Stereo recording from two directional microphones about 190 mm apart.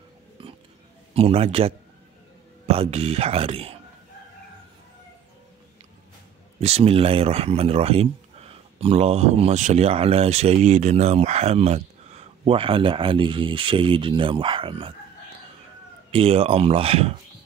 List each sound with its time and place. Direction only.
0.4 s a sound: 25° right (ahead or behind)
1.1 s speech: 30° right (ahead or behind)
6.6 s speech: 30° right (ahead or behind)
16.1 s speech: 30° right (ahead or behind)